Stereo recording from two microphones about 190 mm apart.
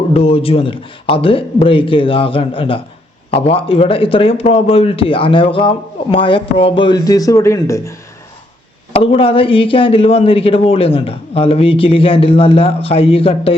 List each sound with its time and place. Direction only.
0.1 s a man's voice: 30° left (ahead or behind); by 7.9 s 15° left (ahead or behind)
8.9 s a man's voice: 30° left (ahead or behind)